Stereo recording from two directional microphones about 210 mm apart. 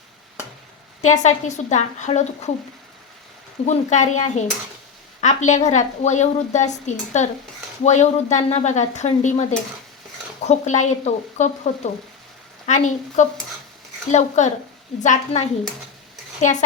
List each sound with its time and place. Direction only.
1.0 s a woman's voice: 35° left (ahead or behind)
3.7 s a woman's voice: 35° left (ahead or behind)